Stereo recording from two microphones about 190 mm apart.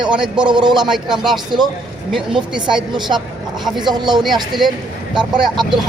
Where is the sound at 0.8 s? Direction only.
Centre (ahead or behind).